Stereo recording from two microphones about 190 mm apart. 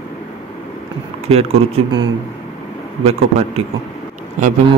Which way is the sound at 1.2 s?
35° right (ahead or behind).